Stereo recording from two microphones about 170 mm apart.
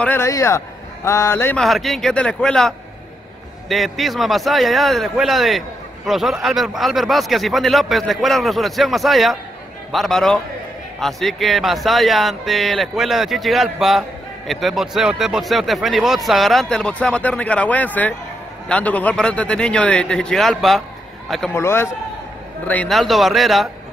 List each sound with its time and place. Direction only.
0.0 s a man's voice: 15° left (ahead or behind)
1.6 s a man's voice: centre (ahead or behind)
21.5 s a man's voice: 15° left (ahead or behind)
22.7 s a man's voice: 5° left (ahead or behind)